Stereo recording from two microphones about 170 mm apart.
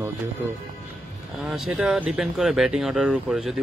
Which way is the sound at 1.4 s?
5° right (ahead or behind).